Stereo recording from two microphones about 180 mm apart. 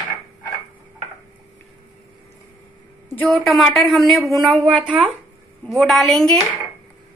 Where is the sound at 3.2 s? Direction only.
Centre (ahead or behind).